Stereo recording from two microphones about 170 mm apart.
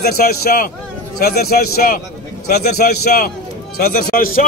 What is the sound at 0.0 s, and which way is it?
A man's voice, 65° left (ahead or behind).